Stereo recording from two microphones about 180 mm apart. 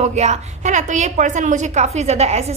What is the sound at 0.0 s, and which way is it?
A woman's voice, 40° right (ahead or behind).